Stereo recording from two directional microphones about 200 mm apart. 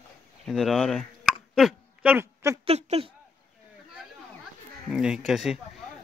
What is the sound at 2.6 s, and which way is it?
Speech, 30° right (ahead or behind).